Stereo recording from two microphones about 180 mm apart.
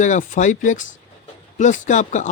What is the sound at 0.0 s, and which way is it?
Speech, 45° left (ahead or behind).